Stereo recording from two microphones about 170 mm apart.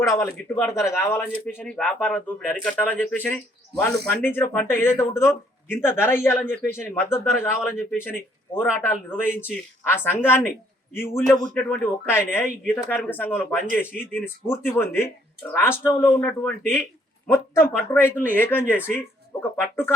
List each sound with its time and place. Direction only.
0.1 s speech: 20° left (ahead or behind)